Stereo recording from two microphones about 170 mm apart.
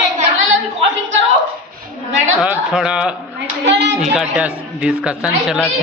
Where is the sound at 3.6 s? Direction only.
90° right.